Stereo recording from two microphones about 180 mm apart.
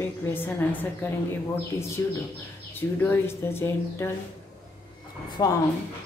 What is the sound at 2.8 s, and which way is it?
A woman's voice, 10° left (ahead or behind).